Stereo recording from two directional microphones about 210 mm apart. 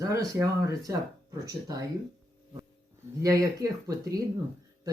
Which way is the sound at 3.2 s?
15° right (ahead or behind).